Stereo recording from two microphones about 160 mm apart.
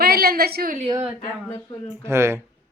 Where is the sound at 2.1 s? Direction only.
15° right (ahead or behind).